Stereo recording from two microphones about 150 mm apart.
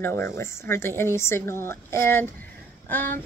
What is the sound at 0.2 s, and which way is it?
A woman's voice, 15° left (ahead or behind).